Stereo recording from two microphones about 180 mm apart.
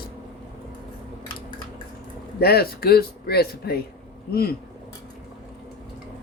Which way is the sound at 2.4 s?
60° left (ahead or behind).